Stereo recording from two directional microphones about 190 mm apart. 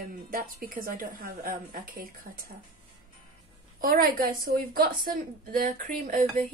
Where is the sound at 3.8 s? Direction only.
50° right (ahead or behind).